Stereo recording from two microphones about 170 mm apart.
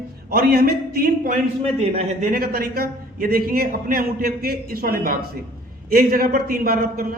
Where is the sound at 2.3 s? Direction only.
60° right (ahead or behind).